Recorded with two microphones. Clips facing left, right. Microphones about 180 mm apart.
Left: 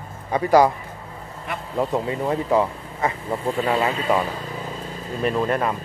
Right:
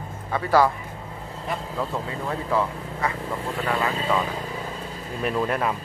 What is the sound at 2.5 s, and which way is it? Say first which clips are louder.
Speech: left 4 dB; 20° left (ahead or behind).